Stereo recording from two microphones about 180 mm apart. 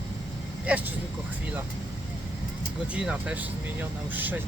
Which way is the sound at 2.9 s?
5° right (ahead or behind).